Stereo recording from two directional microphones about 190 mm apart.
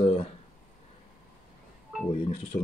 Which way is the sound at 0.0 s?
30° left (ahead or behind).